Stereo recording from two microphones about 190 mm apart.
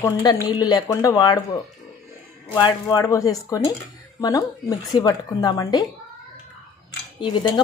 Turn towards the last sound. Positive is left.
turn(degrees=25)  # may be behind; listen again after turning